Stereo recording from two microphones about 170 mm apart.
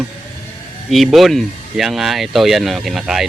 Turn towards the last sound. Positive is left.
turn(degrees=0)  # may be behind; listen again after turning